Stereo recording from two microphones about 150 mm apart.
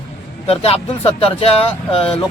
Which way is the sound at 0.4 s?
40° left (ahead or behind).